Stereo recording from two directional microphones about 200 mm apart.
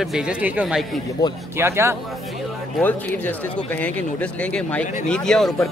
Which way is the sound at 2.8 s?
10° left (ahead or behind).